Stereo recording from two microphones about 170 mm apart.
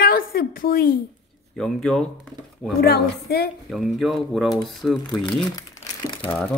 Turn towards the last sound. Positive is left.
turn(degrees=30)  # may be behind; listen again after turning